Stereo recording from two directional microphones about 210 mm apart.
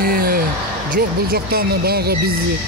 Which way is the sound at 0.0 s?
45° right (ahead or behind).